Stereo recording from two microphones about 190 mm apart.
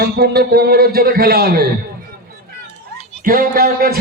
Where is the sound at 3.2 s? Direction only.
50° right (ahead or behind).